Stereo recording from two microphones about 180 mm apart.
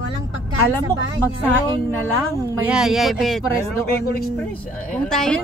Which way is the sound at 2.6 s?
5° right (ahead or behind).